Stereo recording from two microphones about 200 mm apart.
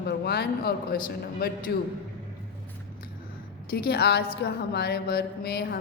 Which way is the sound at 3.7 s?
55° left (ahead or behind).